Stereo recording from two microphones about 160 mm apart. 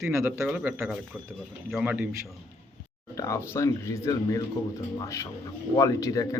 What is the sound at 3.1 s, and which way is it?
A man's voice, 20° left (ahead or behind).